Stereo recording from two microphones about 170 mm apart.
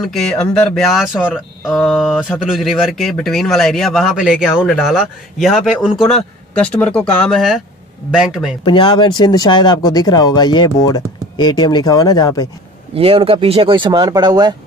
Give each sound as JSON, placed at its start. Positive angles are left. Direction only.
{"t": 0.0, "sound": "speech", "side_deg": 5}
{"t": 7.3, "sound": "speech", "side_deg": 0}
{"t": 8.6, "sound": "speech", "side_deg": 30}
{"t": 12.9, "sound": "speech", "side_deg": -35}